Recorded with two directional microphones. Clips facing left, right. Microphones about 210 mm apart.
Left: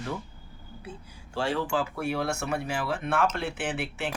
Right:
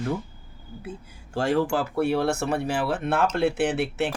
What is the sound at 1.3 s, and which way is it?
Speech, 45° right (ahead or behind).